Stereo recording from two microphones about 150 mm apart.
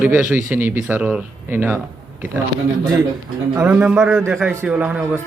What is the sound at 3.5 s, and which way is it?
Speech, 10° right (ahead or behind).